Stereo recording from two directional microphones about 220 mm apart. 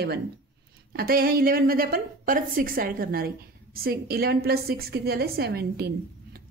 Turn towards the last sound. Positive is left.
turn(degrees=-45)  # may be behind; listen again after turning